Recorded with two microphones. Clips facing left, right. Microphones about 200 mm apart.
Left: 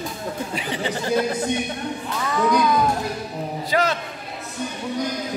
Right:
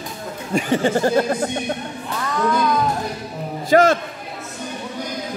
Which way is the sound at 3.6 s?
45° right (ahead or behind).